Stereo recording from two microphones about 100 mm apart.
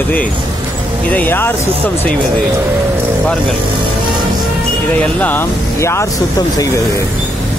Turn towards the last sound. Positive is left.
turn(degrees=40)  # may be behind; listen again after turning